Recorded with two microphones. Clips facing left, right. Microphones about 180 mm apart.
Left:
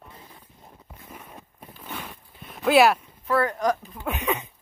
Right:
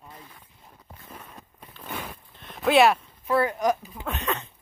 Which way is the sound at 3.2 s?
15° right (ahead or behind).